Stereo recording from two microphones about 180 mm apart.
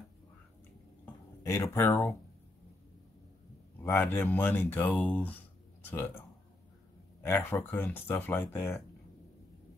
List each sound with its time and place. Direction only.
1.0 s a sound: 15° left (ahead or behind)
3.8 s speech: 10° left (ahead or behind)
7.2 s speech: 15° left (ahead or behind)